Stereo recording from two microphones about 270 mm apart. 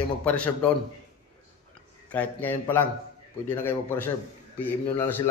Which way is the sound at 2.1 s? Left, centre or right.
Centre.